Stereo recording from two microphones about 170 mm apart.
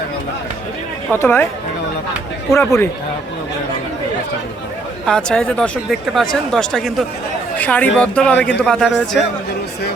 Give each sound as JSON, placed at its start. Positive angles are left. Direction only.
{"t": 1.2, "sound": "a man's voice", "side_deg": 10}
{"t": 2.5, "sound": "a man's voice", "side_deg": 15}
{"t": 5.0, "sound": "a man's voice", "side_deg": 5}